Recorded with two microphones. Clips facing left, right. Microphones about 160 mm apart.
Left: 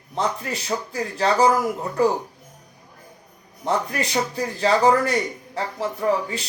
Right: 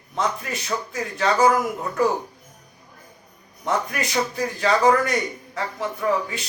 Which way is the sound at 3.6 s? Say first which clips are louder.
Left 1 dB; 30° left (ahead or behind).